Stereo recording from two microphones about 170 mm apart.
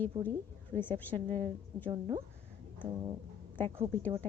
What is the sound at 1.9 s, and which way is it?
Speech, 25° right (ahead or behind).